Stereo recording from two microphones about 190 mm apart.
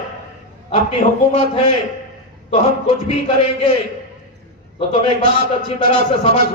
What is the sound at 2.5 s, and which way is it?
A man's voice, 35° left (ahead or behind).